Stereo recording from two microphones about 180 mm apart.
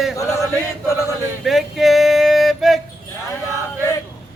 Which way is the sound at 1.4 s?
Centre (ahead or behind).